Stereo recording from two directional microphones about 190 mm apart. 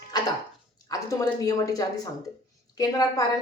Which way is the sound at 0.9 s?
20° left (ahead or behind).